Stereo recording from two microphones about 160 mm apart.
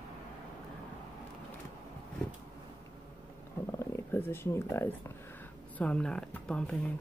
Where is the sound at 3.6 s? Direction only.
15° left (ahead or behind).